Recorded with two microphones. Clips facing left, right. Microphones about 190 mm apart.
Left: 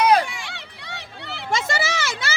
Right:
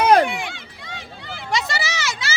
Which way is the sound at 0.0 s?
55° right (ahead or behind).